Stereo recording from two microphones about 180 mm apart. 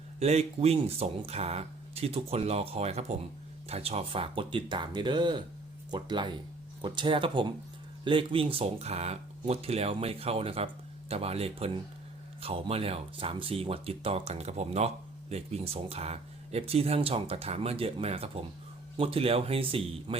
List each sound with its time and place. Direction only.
0.2 s speech: 35° right (ahead or behind)